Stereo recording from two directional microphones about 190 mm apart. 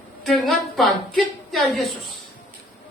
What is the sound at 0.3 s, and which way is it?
A woman's voice, centre (ahead or behind).